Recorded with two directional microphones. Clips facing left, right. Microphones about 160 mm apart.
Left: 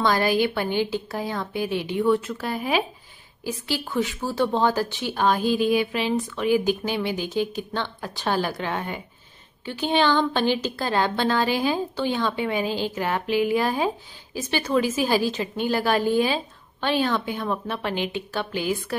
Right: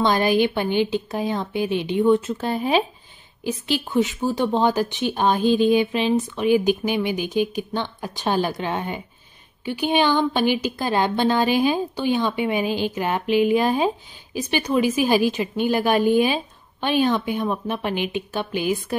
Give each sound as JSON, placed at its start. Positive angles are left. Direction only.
{"t": 0.0, "sound": "speech", "side_deg": -20}